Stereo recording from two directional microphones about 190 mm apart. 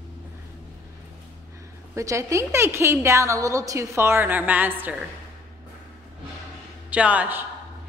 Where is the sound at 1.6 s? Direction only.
15° right (ahead or behind).